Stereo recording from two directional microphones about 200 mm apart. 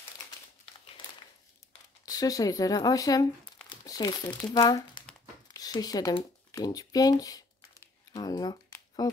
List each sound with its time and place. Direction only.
2.0 s speech: 20° left (ahead or behind)
3.6 s crumpling: 20° left (ahead or behind)
4.6 s speech: 20° left (ahead or behind)
5.5 s a sound: 20° left (ahead or behind)